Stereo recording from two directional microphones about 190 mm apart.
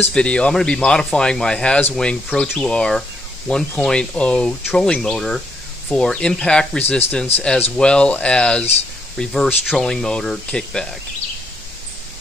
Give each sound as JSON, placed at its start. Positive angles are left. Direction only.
{"t": 0.0, "sound": "speech", "side_deg": 5}